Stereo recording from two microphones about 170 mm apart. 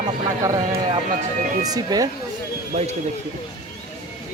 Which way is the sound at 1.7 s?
20° right (ahead or behind).